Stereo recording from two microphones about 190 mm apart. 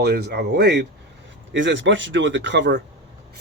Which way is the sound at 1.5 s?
75° right (ahead or behind).